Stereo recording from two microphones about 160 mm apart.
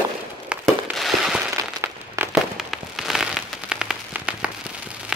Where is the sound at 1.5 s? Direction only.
15° right (ahead or behind).